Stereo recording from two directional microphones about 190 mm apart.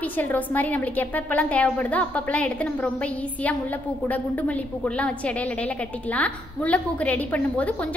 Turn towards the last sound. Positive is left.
turn(degrees=5)  # may be behind; listen again after turning